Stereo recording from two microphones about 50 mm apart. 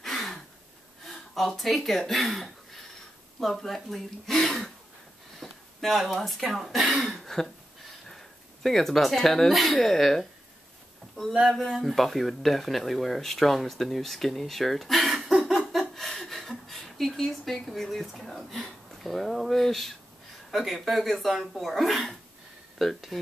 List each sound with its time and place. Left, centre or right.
0.0 s gasp: centre
1.3 s speech: centre
7.2 s throat clearing: centre
8.1 s speech: centre
15.2 s a sound: centre
15.8 s a sound: centre
19.0 s speech: centre